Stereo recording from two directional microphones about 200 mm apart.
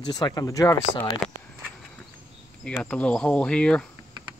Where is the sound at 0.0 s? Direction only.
20° left (ahead or behind).